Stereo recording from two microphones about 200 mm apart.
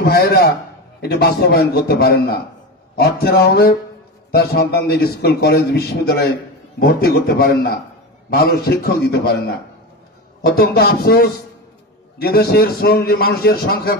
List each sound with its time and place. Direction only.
0.0 s a man's voice: 50° left (ahead or behind)